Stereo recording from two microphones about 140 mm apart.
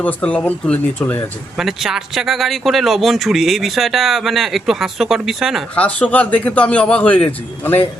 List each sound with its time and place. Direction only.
0.0 s a man's voice: 10° left (ahead or behind)
1.5 s speech: centre (ahead or behind)
5.7 s a man's voice: 10° left (ahead or behind)